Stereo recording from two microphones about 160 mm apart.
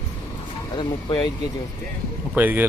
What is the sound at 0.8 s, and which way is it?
Speech, 30° left (ahead or behind).